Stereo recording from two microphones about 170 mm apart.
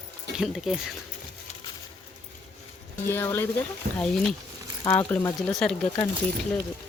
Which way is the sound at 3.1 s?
10° left (ahead or behind).